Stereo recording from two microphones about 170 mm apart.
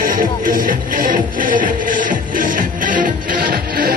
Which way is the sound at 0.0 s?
55° right (ahead or behind).